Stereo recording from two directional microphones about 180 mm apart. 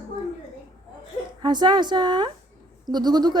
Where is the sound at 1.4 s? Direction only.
25° right (ahead or behind).